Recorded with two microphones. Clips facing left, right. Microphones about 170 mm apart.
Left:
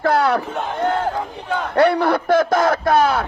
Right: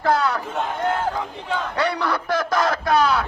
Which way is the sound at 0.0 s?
65° left (ahead or behind).